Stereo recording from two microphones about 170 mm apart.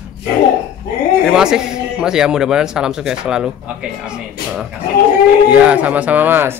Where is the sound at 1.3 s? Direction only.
5° right (ahead or behind).